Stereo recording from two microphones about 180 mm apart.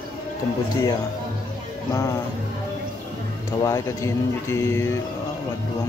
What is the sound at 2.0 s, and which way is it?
Speech, 15° left (ahead or behind).